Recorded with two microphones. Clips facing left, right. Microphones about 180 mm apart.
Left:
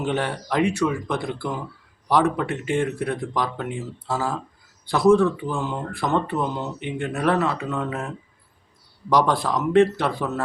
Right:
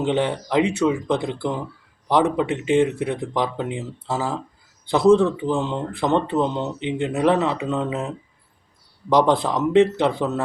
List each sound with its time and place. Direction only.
0.0 s speech: 20° right (ahead or behind)